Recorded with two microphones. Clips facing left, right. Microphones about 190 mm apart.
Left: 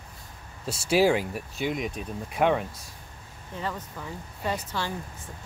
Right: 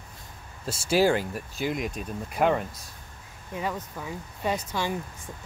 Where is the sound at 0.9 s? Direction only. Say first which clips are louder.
Left 1 dB; centre (ahead or behind).